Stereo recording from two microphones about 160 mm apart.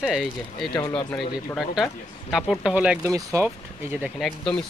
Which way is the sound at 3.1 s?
20° right (ahead or behind).